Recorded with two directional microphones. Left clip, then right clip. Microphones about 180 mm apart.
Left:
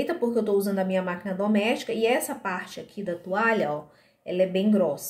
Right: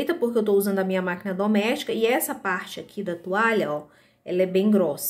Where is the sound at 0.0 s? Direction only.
40° right (ahead or behind).